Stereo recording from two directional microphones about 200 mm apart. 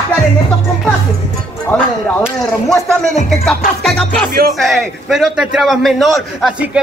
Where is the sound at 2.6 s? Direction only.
Centre (ahead or behind).